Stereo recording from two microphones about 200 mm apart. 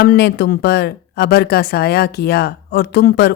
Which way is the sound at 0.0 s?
50° left (ahead or behind).